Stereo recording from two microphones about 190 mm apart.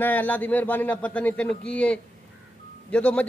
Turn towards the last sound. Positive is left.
turn(degrees=5)  # may be behind; listen again after turning